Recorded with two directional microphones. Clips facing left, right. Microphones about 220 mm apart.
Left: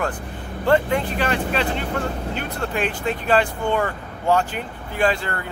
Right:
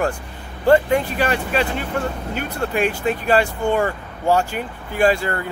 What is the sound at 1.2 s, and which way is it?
Speech, 10° right (ahead or behind).